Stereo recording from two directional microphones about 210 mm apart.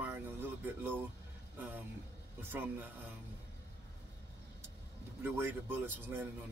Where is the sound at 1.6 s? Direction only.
10° right (ahead or behind).